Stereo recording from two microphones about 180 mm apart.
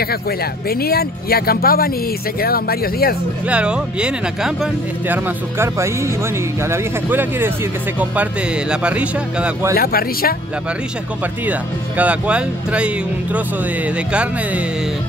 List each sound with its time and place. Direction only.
0.7 s speech: 60° left (ahead or behind)
3.4 s speech: 5° right (ahead or behind)
9.8 s speech: 55° left (ahead or behind)
12.0 s speech: 5° right (ahead or behind)